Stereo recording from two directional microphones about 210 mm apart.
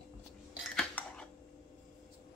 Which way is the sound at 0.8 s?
5° left (ahead or behind).